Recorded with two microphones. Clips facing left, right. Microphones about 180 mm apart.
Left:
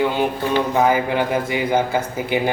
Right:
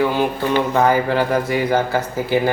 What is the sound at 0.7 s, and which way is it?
Speech, 10° left (ahead or behind).